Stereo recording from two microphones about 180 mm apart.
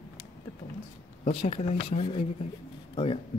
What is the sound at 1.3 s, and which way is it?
Speech, 30° left (ahead or behind).